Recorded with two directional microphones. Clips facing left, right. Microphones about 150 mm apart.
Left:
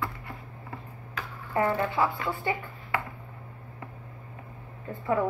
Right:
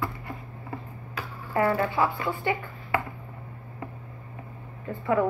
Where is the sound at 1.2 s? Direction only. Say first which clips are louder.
Right 2 dB; 10° right (ahead or behind).